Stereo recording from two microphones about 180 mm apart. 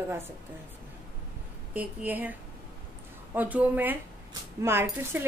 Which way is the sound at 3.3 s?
10° right (ahead or behind).